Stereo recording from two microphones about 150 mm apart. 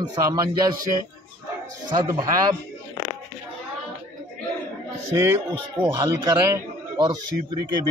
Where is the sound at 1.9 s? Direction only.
30° right (ahead or behind).